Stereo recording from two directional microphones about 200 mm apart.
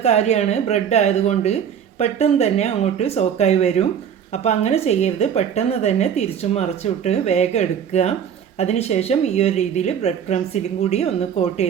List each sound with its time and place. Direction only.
0.0 s a woman's voice: 35° left (ahead or behind)